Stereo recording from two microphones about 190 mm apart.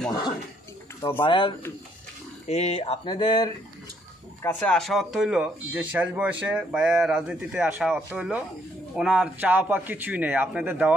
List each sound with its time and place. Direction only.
1.2 s speech: 25° left (ahead or behind)
4.4 s speech: 10° left (ahead or behind); by 10.9 s 10° right (ahead or behind)